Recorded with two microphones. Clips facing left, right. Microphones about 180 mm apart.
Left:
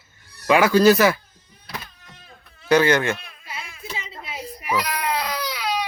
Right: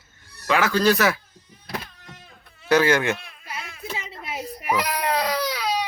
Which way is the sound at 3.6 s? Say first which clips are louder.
Right 1 dB; 55° right (ahead or behind).